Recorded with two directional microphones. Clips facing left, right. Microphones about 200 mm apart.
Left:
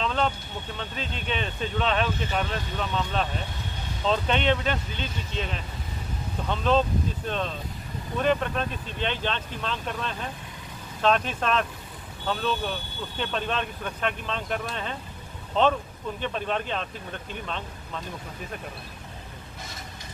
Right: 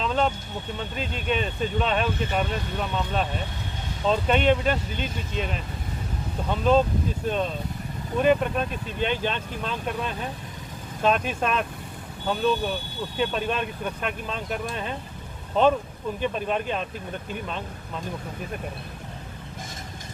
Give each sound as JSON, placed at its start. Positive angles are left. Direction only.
{"t": 0.0, "sound": "a sound", "side_deg": -10}
{"t": 1.3, "sound": "speech", "side_deg": -5}
{"t": 4.9, "sound": "speech", "side_deg": -50}
{"t": 6.5, "sound": "speech", "side_deg": -10}
{"t": 8.2, "sound": "speech", "side_deg": -10}
{"t": 16.2, "sound": "speech", "side_deg": -10}